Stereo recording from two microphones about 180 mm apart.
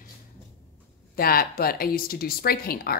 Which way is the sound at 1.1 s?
55° left (ahead or behind).